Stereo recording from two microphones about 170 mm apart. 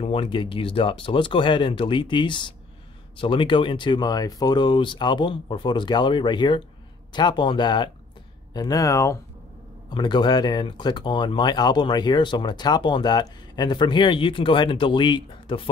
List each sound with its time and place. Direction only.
0.0 s speech: 30° left (ahead or behind)